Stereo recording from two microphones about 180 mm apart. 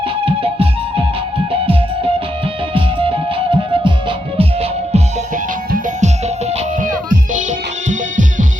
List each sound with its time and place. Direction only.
0.0 s music: 30° right (ahead or behind)
2.7 s music: 30° right (ahead or behind); by 8.4 s 45° right (ahead or behind)